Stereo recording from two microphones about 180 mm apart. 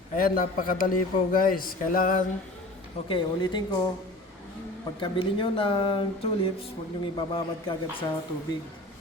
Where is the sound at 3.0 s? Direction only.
25° left (ahead or behind).